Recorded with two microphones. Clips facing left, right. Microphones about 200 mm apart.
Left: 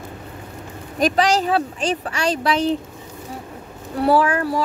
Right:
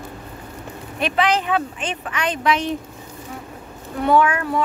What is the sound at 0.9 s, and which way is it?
Speech, 40° left (ahead or behind).